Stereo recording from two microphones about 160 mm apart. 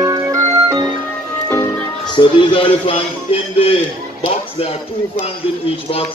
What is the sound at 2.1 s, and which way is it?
Speech, 30° left (ahead or behind).